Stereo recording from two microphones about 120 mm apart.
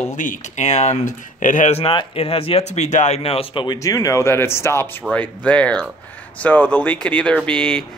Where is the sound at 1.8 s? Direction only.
50° left (ahead or behind).